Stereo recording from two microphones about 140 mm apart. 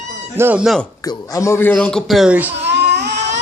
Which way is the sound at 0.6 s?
Centre (ahead or behind).